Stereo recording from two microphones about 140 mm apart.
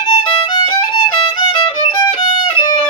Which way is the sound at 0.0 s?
35° left (ahead or behind).